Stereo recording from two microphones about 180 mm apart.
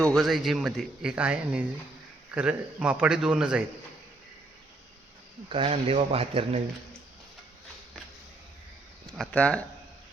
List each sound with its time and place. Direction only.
0.0 s speech: centre (ahead or behind)
5.5 s speech: 30° right (ahead or behind)
9.1 s speech: 5° left (ahead or behind)